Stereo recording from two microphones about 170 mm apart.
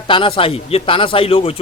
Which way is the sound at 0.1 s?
30° left (ahead or behind).